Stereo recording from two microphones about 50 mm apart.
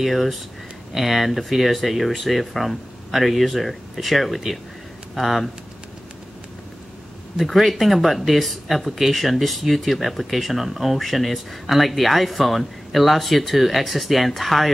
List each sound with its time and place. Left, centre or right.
0.0 s speech: centre
7.3 s speech: centre